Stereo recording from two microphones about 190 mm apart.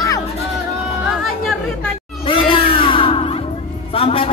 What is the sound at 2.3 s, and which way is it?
Music, 25° left (ahead or behind).